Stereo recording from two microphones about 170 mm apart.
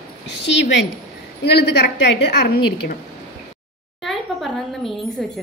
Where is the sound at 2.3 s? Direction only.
70° left (ahead or behind).